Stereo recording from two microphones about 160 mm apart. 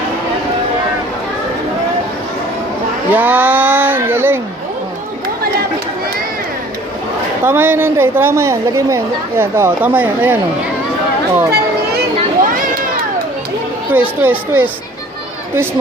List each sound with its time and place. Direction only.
3.1 s speech: 10° right (ahead or behind)
7.4 s a woman's voice: 15° right (ahead or behind)
11.5 s children playing: 85° right
13.9 s a woman's voice: 10° right (ahead or behind)